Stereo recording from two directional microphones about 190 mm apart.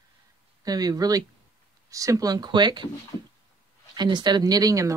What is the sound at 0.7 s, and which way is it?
Speech, 20° right (ahead or behind).